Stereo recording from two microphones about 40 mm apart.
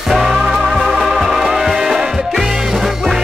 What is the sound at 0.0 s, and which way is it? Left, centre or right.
Music, centre.